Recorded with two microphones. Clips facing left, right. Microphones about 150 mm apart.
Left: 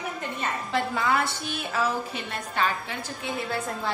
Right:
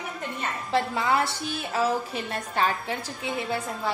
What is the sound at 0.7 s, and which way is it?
Speech, 30° right (ahead or behind).